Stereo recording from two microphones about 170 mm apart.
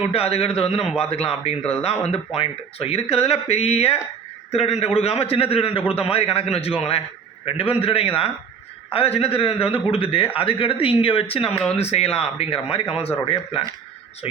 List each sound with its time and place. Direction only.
0.1 s speech: 35° left (ahead or behind)